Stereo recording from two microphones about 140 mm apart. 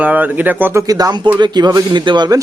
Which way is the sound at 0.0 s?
10° right (ahead or behind).